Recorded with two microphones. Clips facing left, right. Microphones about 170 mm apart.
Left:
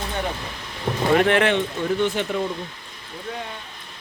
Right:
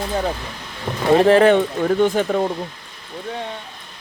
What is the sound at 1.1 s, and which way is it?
Speech, 30° right (ahead or behind).